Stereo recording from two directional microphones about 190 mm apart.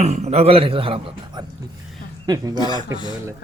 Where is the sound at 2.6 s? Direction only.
20° left (ahead or behind).